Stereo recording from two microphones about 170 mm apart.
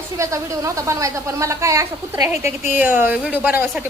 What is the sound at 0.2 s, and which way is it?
Speech, 20° right (ahead or behind).